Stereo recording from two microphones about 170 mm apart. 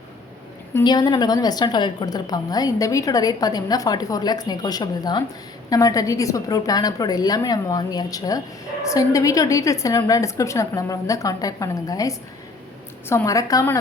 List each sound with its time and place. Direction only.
0.9 s a woman's voice: 25° left (ahead or behind)